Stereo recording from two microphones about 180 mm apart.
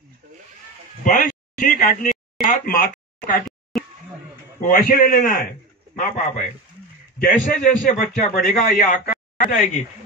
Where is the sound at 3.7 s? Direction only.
Centre (ahead or behind).